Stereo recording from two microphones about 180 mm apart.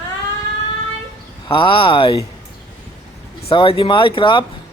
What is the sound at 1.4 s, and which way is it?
Speech, 25° left (ahead or behind).